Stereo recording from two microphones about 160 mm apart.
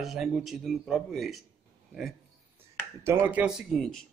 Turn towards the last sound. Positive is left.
turn(degrees=0)  # may be behind; listen again after turning